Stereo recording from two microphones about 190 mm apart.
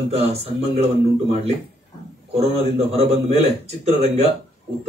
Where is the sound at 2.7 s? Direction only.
30° right (ahead or behind).